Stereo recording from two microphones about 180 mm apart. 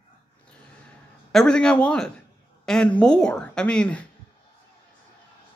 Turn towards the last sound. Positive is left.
turn(degrees=5)  # may be behind; listen again after turning